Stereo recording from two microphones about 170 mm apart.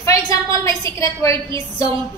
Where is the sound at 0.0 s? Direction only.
20° left (ahead or behind).